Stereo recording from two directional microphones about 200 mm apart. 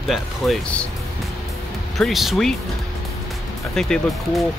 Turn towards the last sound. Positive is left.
turn(degrees=0)  # may be behind; listen again after turning